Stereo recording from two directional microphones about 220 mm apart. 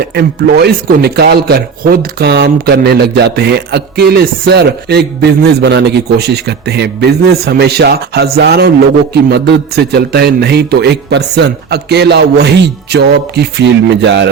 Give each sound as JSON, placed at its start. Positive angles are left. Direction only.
{"t": 0.0, "sound": "a man's voice", "side_deg": -45}